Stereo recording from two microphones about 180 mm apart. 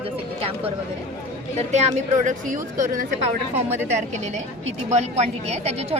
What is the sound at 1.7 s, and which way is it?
Speech, 40° right (ahead or behind).